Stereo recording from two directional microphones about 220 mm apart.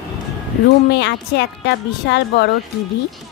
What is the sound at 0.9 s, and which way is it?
A woman's voice, 50° left (ahead or behind).